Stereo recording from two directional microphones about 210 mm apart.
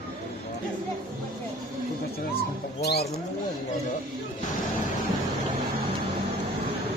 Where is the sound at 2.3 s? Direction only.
50° left (ahead or behind).